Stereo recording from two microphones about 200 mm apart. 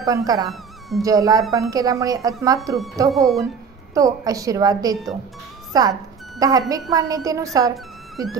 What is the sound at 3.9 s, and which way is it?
A woman's voice, 15° right (ahead or behind).